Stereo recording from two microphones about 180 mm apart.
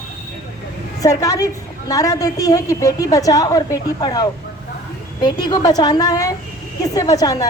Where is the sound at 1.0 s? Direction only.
20° left (ahead or behind).